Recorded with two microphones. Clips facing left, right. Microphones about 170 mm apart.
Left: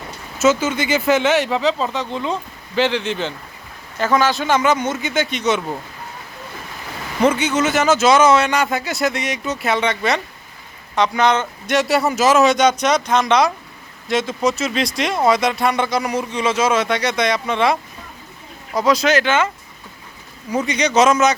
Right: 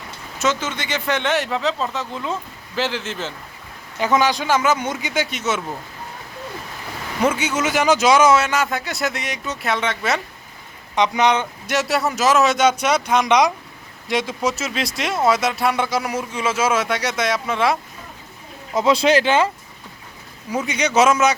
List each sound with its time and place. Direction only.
0.3 s speech: 10° left (ahead or behind)
3.9 s speech: 15° right (ahead or behind)
7.3 s speech: 10° right (ahead or behind)
10.9 s speech: 20° right (ahead or behind)
18.7 s speech: 25° right (ahead or behind)
20.5 s speech: 5° right (ahead or behind)